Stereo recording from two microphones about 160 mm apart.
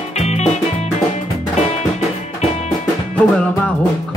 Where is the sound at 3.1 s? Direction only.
10° left (ahead or behind).